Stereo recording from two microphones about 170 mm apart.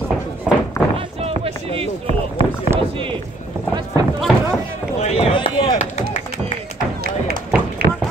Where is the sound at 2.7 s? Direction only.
30° right (ahead or behind).